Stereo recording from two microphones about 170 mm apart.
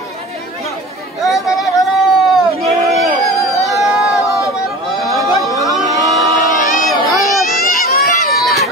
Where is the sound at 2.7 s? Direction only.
Centre (ahead or behind).